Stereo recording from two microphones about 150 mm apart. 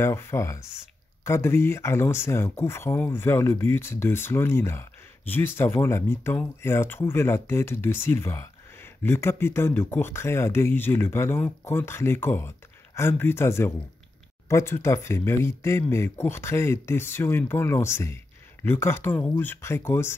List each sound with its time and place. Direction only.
0.0 s speech: 15° left (ahead or behind)